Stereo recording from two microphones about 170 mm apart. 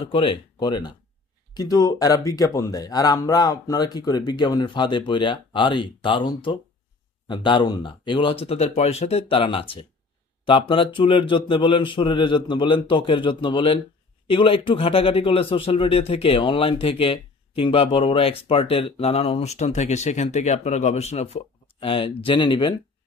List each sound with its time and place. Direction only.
0.0 s speech: 30° left (ahead or behind)